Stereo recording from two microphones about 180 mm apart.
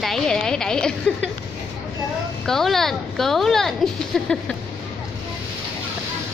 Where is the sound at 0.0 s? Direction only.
5° left (ahead or behind).